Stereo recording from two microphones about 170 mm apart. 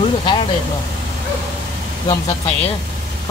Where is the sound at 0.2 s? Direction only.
30° left (ahead or behind).